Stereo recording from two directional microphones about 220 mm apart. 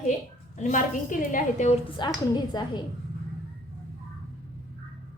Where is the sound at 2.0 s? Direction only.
20° left (ahead or behind).